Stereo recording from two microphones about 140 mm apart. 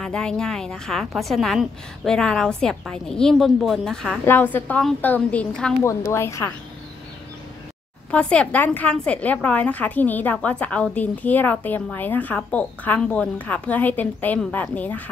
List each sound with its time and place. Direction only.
0.0 s a woman's voice: 5° left (ahead or behind)
4.3 s a woman's voice: 15° left (ahead or behind)
5.8 s a woman's voice: 20° left (ahead or behind)
8.1 s a woman's voice: 10° left (ahead or behind)